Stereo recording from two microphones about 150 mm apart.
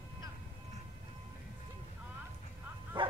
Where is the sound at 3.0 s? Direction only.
35° right (ahead or behind).